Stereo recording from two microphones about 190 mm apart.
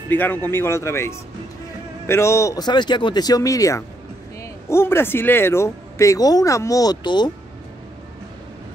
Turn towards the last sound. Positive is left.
turn(degrees=25)  # may be behind; listen again after turning